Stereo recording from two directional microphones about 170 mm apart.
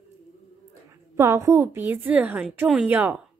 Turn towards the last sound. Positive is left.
turn(degrees=-5)  # may be behind; listen again after turning